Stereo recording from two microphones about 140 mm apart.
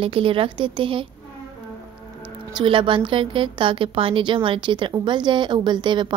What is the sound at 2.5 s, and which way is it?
A woman's voice, 35° right (ahead or behind).